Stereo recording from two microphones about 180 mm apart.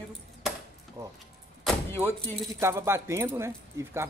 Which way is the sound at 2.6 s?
15° right (ahead or behind).